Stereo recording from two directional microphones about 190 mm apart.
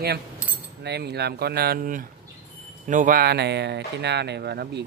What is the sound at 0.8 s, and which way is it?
Speech, 60° right (ahead or behind).